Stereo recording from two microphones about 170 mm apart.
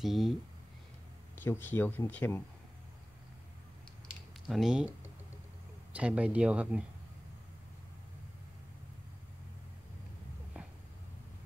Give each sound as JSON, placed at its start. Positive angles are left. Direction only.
{"t": 0.0, "sound": "speech", "side_deg": 0}
{"t": 1.3, "sound": "speech", "side_deg": 10}
{"t": 4.5, "sound": "speech", "side_deg": 0}
{"t": 5.9, "sound": "speech", "side_deg": -10}